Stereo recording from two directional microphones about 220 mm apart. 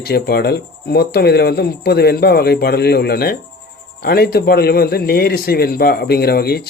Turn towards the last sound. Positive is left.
turn(degrees=45)  # may be behind; listen again after turning